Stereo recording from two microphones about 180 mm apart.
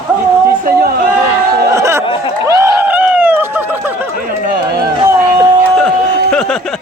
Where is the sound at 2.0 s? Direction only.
30° left (ahead or behind).